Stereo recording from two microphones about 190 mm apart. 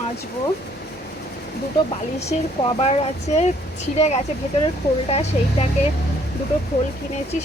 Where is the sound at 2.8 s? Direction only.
35° left (ahead or behind).